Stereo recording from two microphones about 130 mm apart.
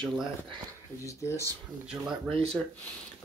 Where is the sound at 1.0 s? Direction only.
20° left (ahead or behind).